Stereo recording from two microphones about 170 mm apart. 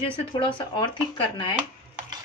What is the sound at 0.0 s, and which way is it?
Speech, 35° left (ahead or behind).